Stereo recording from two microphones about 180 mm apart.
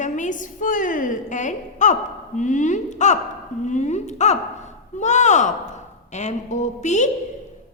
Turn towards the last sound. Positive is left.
turn(degrees=40)  # may be behind; listen again after turning